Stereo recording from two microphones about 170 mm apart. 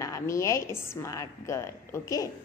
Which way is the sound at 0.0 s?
15° left (ahead or behind).